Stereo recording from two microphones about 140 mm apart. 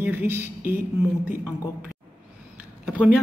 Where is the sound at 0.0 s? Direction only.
15° right (ahead or behind).